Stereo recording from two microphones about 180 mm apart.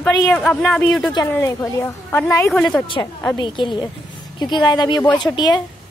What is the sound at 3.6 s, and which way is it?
A woman's voice, 25° left (ahead or behind).